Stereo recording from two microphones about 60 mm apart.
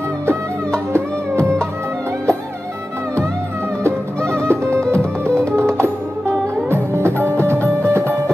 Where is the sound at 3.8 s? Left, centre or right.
Right.